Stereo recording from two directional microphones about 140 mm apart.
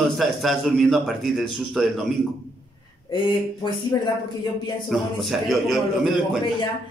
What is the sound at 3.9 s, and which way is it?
Speech, 25° left (ahead or behind).